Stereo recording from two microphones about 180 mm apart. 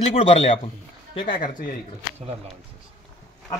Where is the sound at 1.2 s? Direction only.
50° left (ahead or behind).